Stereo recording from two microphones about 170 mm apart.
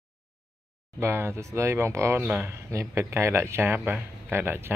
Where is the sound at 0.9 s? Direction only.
15° right (ahead or behind).